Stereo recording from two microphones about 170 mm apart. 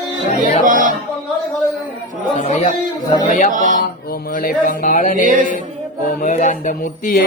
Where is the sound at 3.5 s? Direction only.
50° right (ahead or behind).